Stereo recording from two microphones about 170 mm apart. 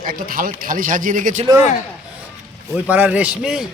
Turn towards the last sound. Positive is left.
turn(degrees=-5)  # may be behind; listen again after turning